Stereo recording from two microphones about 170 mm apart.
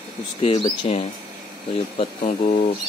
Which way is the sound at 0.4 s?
35° left (ahead or behind).